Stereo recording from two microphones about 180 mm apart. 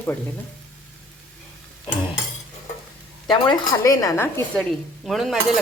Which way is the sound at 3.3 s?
20° left (ahead or behind).